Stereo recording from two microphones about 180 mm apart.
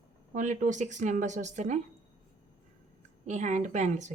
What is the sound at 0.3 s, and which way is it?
Speech, 45° right (ahead or behind).